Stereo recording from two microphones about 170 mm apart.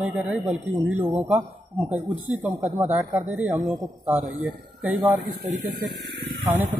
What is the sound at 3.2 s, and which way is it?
Speech, 10° right (ahead or behind).